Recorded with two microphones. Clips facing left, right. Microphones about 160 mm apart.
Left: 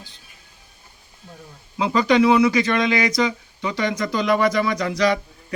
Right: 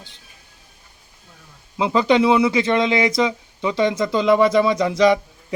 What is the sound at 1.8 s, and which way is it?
Speech, 25° right (ahead or behind).